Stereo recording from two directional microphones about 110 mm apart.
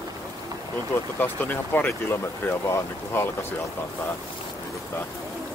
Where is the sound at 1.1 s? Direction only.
15° left (ahead or behind).